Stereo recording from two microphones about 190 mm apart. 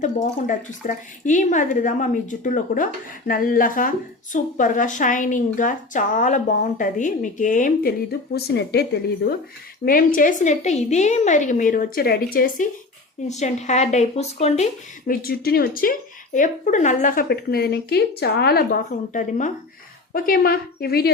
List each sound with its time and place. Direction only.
0.0 s a woman's voice: 45° left (ahead or behind)
8.3 s speech: 60° left (ahead or behind)
9.8 s a woman's voice: 45° left (ahead or behind)
13.2 s speech: 35° left (ahead or behind)
15.0 s a woman's voice: 50° left (ahead or behind)